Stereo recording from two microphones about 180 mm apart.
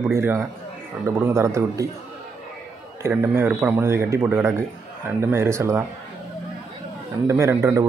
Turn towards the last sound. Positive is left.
turn(degrees=-15)  # may be behind; listen again after turning